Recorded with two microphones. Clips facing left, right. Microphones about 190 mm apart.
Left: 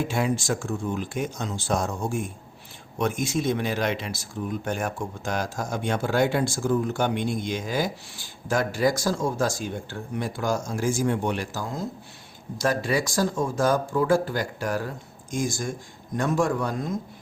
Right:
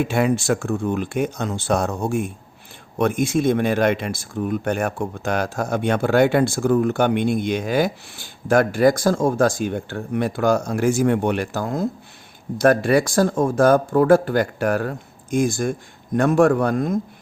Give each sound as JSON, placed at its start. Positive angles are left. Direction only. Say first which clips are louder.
{"t": 0.0, "sound": "speech", "louder": "right 6 dB", "side_deg": -65}